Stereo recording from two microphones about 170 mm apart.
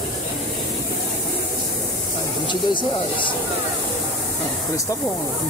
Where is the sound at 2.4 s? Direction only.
30° left (ahead or behind).